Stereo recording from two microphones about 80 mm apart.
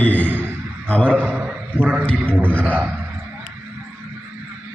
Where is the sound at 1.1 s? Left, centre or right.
Right.